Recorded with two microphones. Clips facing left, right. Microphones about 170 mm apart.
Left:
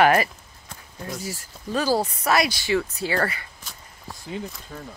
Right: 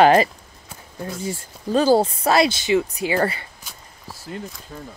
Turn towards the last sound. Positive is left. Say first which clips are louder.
# even
turn(degrees=0)  # may be behind; listen again after turning